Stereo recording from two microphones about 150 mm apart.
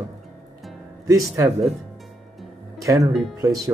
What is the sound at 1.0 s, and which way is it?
Speech, 20° right (ahead or behind).